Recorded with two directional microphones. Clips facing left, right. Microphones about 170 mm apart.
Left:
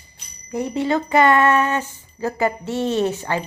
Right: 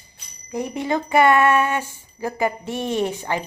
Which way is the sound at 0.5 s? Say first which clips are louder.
Left 3 dB; 15° right (ahead or behind).